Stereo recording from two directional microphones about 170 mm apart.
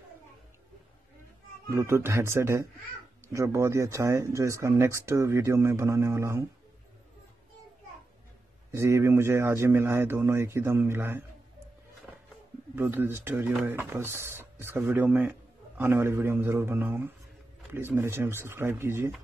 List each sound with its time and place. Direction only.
1.7 s speech: 15° right (ahead or behind)
8.7 s speech: 15° right (ahead or behind)
12.7 s speech: 15° right (ahead or behind)